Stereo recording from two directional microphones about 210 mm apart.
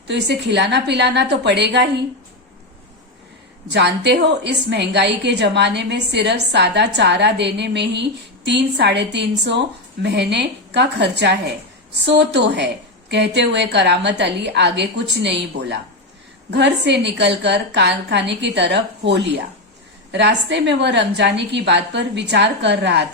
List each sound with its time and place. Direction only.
0.1 s a woman's voice: 55° right (ahead or behind)
3.7 s a woman's voice: 55° right (ahead or behind)